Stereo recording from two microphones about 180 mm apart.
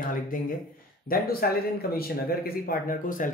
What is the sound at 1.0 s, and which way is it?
Speech, 55° left (ahead or behind).